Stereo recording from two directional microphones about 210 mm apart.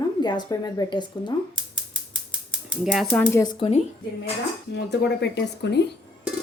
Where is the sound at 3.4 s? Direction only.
25° left (ahead or behind).